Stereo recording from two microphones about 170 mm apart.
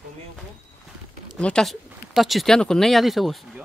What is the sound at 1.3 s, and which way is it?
Speech, 5° left (ahead or behind).